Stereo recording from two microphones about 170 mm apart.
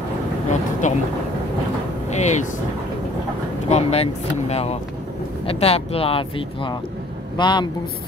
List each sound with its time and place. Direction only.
0.8 s speech: 45° left (ahead or behind)
2.0 s speech: 40° left (ahead or behind)
3.6 s speech: 40° left (ahead or behind)